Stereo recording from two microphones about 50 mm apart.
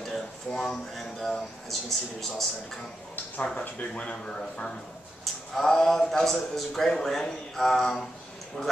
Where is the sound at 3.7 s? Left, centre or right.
Left.